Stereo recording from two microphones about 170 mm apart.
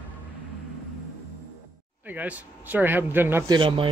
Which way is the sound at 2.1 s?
10° right (ahead or behind).